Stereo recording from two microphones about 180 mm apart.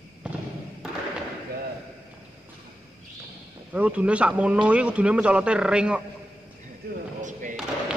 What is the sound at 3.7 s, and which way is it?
A man's voice, 5° right (ahead or behind).